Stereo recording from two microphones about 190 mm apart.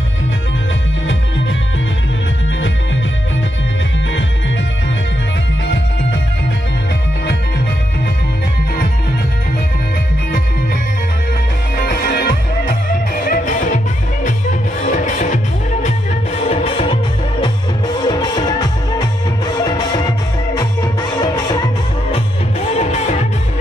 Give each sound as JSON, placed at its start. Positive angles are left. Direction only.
{"t": 11.7, "sound": "music", "side_deg": 50}
{"t": 14.9, "sound": "music", "side_deg": 40}
{"t": 16.4, "sound": "music", "side_deg": 30}
{"t": 22.8, "sound": "music", "side_deg": 35}